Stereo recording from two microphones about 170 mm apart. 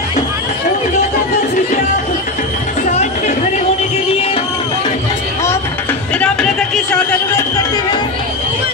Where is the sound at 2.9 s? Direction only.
45° left (ahead or behind).